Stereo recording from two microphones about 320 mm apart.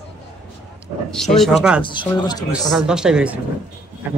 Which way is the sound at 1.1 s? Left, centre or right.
Centre.